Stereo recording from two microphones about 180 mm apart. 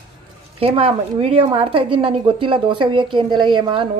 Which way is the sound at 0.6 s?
35° right (ahead or behind).